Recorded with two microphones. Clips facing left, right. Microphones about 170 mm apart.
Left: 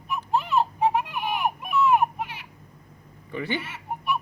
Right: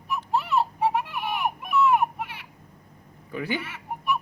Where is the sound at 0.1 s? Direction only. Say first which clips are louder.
Left 1 dB; 25° left (ahead or behind).